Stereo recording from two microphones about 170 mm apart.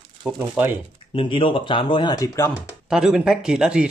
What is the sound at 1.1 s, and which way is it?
Speech, 30° left (ahead or behind).